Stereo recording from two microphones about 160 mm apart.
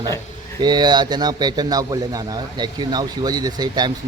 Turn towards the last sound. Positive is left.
turn(degrees=-25)  # may be behind; listen again after turning